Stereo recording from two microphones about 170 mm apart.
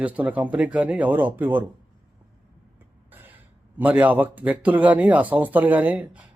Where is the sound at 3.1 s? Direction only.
10° right (ahead or behind).